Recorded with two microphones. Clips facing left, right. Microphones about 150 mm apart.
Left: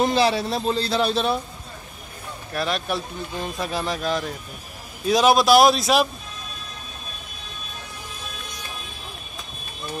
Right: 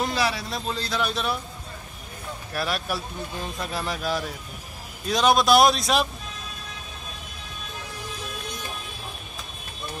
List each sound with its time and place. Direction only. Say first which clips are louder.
0.0 s a man's voice: left 6 dB; 25° left (ahead or behind)
2.5 s speech: left 3 dB; 5° right (ahead or behind)
3.5 s speech: left 5 dB; 10° left (ahead or behind)
3.8 s speech: left 2 dB; 5° right (ahead or behind)
5.0 s speech: left 3 dB; 5° left (ahead or behind)